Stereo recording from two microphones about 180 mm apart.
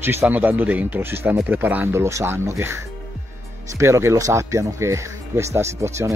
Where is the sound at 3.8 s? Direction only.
15° right (ahead or behind).